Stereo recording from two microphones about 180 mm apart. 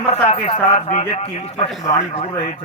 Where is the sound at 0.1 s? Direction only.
30° left (ahead or behind).